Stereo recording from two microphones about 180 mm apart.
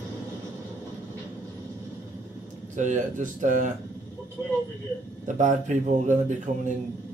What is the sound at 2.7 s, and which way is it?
Speech, 45° right (ahead or behind).